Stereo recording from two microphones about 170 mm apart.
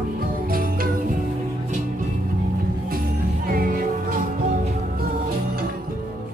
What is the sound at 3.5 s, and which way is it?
Music, 50° right (ahead or behind).